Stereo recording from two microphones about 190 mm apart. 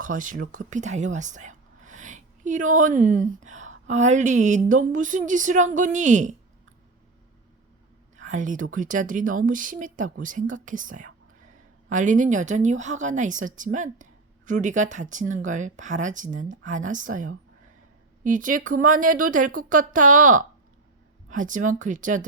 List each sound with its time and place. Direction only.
0.0 s speech: 45° right (ahead or behind)
8.1 s a woman's voice: 40° right (ahead or behind)